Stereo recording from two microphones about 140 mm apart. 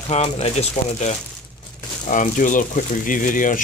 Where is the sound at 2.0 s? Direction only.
70° left (ahead or behind).